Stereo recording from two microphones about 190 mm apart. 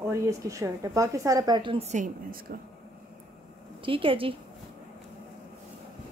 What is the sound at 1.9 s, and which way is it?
Speech, 45° right (ahead or behind).